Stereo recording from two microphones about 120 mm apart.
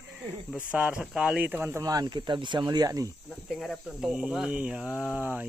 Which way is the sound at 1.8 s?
30° right (ahead or behind).